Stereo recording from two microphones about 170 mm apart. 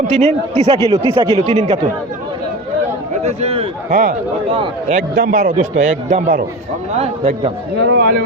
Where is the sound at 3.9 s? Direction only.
60° right (ahead or behind).